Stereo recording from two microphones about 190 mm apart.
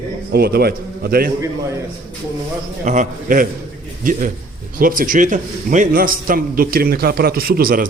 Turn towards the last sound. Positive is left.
turn(degrees=-50)  # may be behind; listen again after turning